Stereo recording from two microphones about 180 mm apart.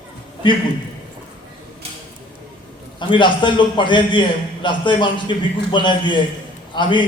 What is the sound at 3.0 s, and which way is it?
A man's voice, 25° left (ahead or behind).